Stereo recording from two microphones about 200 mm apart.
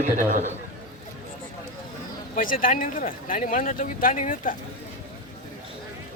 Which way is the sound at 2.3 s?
45° left (ahead or behind).